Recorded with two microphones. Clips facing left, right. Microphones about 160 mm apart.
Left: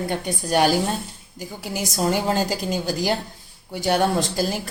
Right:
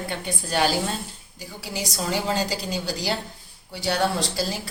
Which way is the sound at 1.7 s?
50° left (ahead or behind).